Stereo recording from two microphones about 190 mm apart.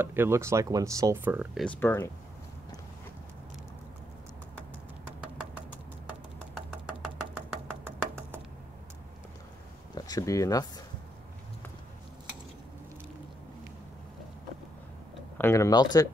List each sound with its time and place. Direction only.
0.0 s speech: 10° right (ahead or behind)
1.6 s speech: 10° left (ahead or behind)
7.3 s a sound: 10° right (ahead or behind)
9.9 s speech: 20° left (ahead or behind)
15.3 s speech: 15° left (ahead or behind)